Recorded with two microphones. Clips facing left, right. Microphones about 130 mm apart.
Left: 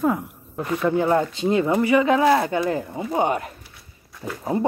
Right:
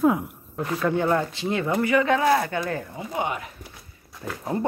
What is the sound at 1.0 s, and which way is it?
Speech, 25° left (ahead or behind).